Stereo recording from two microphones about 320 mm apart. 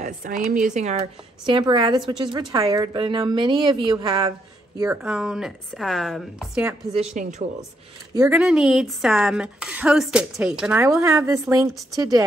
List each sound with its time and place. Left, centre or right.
0.4 s a woman's voice: right; by 7.0 s centre
7.0 s speech: right
8.2 s a woman's voice: centre